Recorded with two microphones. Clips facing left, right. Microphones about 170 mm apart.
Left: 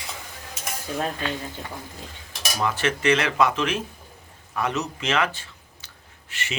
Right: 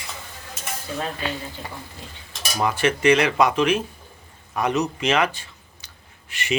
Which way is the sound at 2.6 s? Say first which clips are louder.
Right 4 dB; 15° right (ahead or behind).